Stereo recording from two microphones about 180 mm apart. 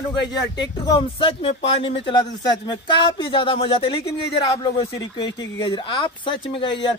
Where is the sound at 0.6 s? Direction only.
25° left (ahead or behind).